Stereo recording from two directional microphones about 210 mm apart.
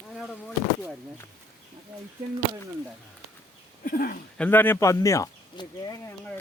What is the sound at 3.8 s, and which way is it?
Speech, 45° left (ahead or behind).